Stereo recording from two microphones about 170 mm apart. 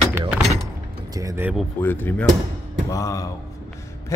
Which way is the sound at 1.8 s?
10° left (ahead or behind).